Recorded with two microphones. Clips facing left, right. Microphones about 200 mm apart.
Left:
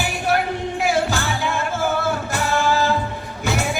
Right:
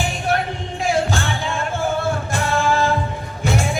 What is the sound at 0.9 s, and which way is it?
Music, 30° right (ahead or behind).